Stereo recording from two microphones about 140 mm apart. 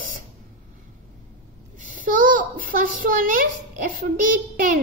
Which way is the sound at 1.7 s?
70° right (ahead or behind).